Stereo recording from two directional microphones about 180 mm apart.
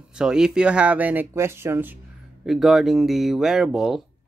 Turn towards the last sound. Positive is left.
turn(degrees=0)  # may be behind; listen again after turning